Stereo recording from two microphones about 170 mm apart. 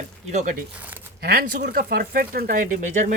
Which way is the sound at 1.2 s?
65° right (ahead or behind).